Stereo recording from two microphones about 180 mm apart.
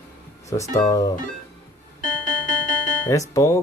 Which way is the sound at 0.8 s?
20° left (ahead or behind).